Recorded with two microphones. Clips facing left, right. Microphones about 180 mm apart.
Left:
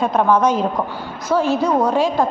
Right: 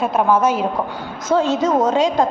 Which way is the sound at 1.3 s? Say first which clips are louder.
Right 1 dB; 20° right (ahead or behind).